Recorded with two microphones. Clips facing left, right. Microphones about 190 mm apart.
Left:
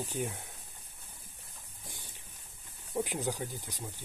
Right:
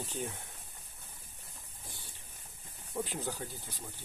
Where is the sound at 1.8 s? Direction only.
15° left (ahead or behind).